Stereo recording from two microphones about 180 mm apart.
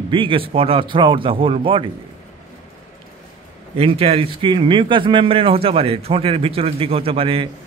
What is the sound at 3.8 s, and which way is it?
Speech, 35° right (ahead or behind).